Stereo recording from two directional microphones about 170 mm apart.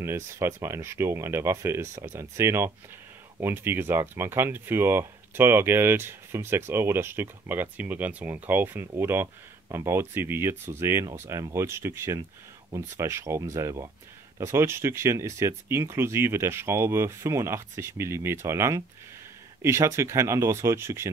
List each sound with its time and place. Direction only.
0.0 s speech: 15° right (ahead or behind)